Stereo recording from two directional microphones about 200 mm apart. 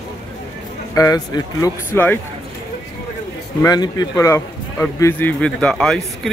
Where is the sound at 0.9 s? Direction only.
15° left (ahead or behind).